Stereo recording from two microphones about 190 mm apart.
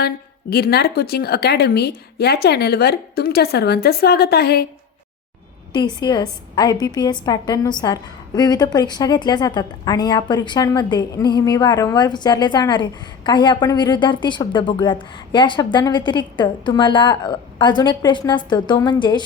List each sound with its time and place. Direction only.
0.5 s speech: 55° left (ahead or behind)
5.7 s a woman's voice: 20° left (ahead or behind)